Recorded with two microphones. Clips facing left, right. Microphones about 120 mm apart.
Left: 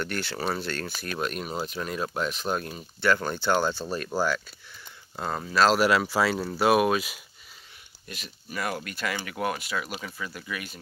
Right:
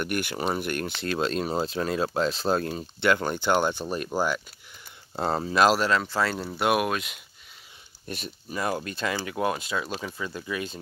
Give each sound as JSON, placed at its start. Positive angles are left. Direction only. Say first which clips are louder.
{"t": 0.0, "sound": "speech", "louder": "right 2 dB", "side_deg": -15}
{"t": 1.1, "sound": "speech", "louder": "right 5 dB", "side_deg": -30}
{"t": 3.0, "sound": "speech", "louder": "right 1 dB", "side_deg": -20}
{"t": 5.1, "sound": "speech", "louder": "right 5 dB", "side_deg": -30}
{"t": 5.8, "sound": "speech", "louder": "left 2 dB", "side_deg": 10}
{"t": 8.1, "sound": "speech", "louder": "right 4 dB", "side_deg": -30}